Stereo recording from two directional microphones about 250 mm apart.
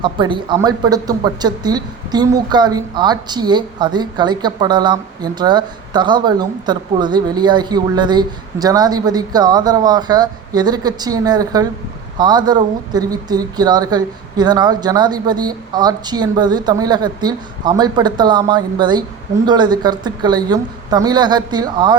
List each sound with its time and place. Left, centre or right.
0.0 s speech: centre